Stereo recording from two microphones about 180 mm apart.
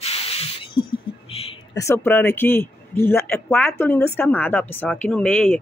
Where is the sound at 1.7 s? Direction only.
15° left (ahead or behind).